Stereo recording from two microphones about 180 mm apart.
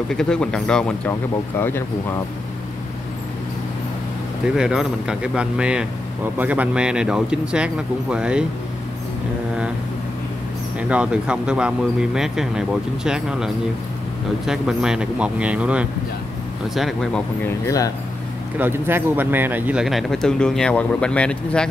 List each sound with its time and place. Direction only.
0.1 s speech: 5° left (ahead or behind)
4.6 s speech: 5° right (ahead or behind)
10.8 s speech: 5° right (ahead or behind)
17.6 s speech: 20° left (ahead or behind)
18.6 s speech: 10° right (ahead or behind); by 21.6 s 5° left (ahead or behind)